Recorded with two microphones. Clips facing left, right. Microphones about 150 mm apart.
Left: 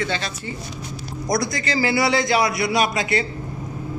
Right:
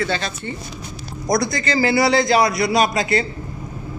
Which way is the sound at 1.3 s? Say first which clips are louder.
Right 3 dB; 40° right (ahead or behind).